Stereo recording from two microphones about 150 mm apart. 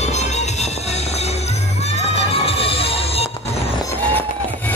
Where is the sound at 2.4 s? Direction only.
40° left (ahead or behind).